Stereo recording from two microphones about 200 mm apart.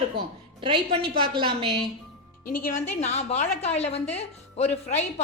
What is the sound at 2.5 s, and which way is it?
A woman's voice, 40° left (ahead or behind).